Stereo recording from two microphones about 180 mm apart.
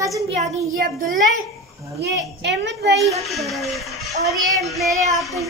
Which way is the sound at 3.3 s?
Centre (ahead or behind).